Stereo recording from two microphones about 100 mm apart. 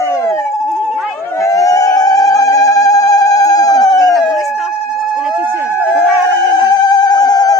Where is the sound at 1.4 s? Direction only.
35° left (ahead or behind).